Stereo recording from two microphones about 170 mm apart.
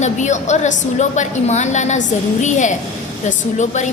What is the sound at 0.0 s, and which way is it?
A woman's voice, 45° left (ahead or behind).